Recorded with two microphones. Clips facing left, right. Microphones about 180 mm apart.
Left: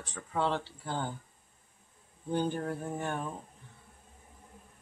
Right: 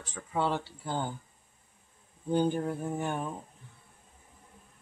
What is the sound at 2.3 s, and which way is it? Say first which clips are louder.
Speech: right 4 dB; 15° right (ahead or behind).